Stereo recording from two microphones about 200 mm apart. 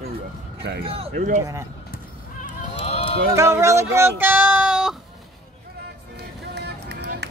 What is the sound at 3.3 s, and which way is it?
Speech, 15° right (ahead or behind).